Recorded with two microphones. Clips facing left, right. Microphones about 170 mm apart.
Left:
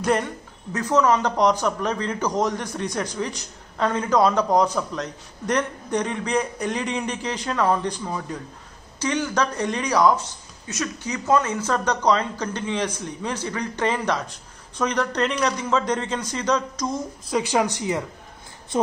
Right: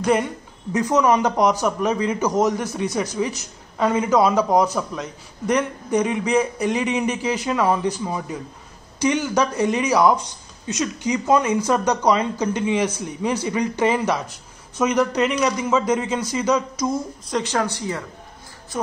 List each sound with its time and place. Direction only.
0.7 s a man's voice: 15° right (ahead or behind)
17.3 s speech: 10° left (ahead or behind)